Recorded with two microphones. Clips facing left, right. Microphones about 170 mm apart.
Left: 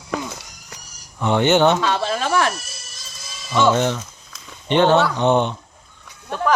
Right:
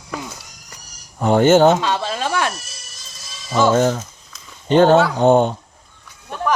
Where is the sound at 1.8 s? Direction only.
15° right (ahead or behind).